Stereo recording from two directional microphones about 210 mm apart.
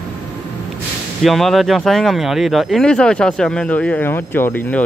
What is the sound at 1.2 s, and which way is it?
Speech, centre (ahead or behind).